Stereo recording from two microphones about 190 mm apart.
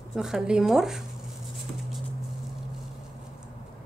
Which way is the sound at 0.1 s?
5° right (ahead or behind).